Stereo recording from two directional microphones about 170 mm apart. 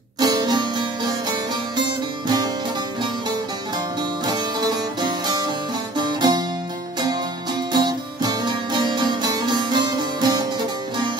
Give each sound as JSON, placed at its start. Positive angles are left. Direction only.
{"t": 0.2, "sound": "music", "side_deg": -25}
{"t": 4.3, "sound": "music", "side_deg": -25}
{"t": 7.7, "sound": "music", "side_deg": -25}